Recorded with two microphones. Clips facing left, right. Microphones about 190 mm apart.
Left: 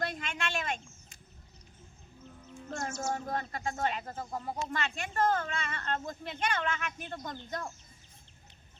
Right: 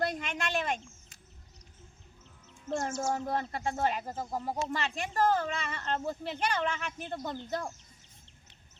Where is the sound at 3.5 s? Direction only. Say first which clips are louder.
Right 3 dB; 30° right (ahead or behind).